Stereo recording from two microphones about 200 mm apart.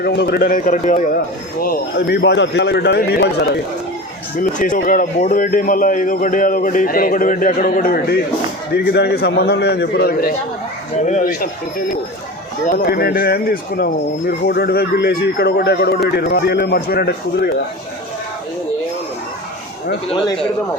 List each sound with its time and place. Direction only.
0.0 s a man's voice: 55° left (ahead or behind)
4.4 s speech: 40° left (ahead or behind)
12.6 s speech: 45° left (ahead or behind)